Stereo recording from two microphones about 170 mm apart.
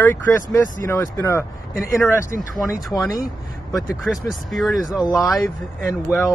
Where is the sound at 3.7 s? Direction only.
Centre (ahead or behind).